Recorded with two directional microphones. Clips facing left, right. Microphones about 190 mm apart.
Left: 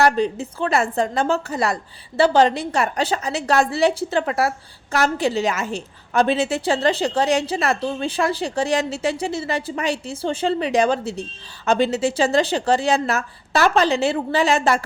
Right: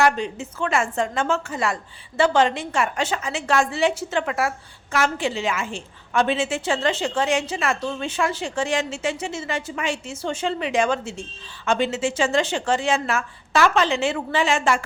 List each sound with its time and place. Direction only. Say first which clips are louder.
0.0 s a woman's voice: left 3 dB; 35° left (ahead or behind)